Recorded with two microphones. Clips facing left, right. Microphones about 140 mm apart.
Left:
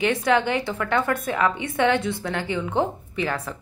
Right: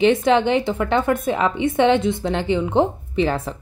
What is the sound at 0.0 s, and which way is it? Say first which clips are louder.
A woman's voice: right 5 dB; 25° right (ahead or behind).